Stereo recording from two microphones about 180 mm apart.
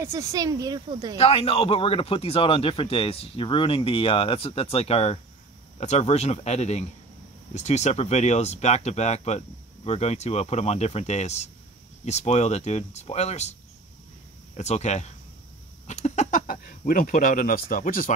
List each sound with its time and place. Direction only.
0.0 s speech: 15° right (ahead or behind)
1.1 s speech: 35° left (ahead or behind)
14.6 s speech: 40° left (ahead or behind)